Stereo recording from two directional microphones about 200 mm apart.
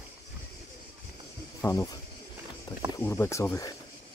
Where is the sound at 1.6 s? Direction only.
15° left (ahead or behind).